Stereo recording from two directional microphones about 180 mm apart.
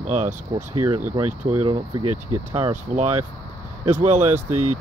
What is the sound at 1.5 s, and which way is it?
Speech, 25° right (ahead or behind).